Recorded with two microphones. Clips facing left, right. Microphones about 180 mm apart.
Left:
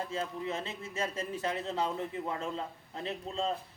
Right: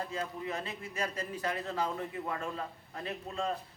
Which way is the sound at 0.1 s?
25° left (ahead or behind).